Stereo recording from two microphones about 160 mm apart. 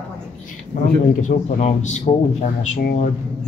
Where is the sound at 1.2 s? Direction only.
45° left (ahead or behind).